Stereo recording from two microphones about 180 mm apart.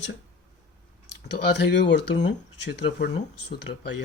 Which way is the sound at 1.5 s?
75° left (ahead or behind).